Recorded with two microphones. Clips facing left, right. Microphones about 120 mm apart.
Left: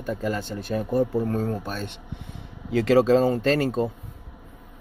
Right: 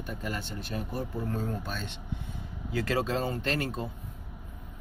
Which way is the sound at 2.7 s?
80° left.